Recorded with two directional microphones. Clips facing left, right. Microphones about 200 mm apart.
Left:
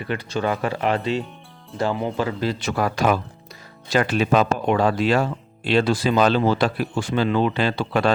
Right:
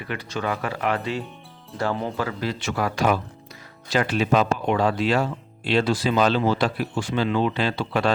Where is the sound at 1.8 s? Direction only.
15° left (ahead or behind).